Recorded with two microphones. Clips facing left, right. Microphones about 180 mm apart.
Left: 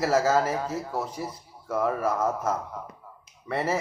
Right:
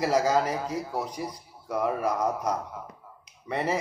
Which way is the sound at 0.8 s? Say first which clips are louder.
Even; 15° right (ahead or behind).